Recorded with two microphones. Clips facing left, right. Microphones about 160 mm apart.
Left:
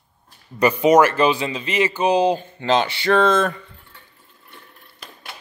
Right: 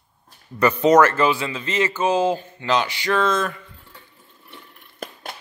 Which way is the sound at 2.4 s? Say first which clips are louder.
Left 3 dB; 25° left (ahead or behind).